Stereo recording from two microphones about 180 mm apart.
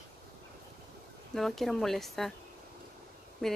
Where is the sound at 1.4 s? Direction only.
Centre (ahead or behind).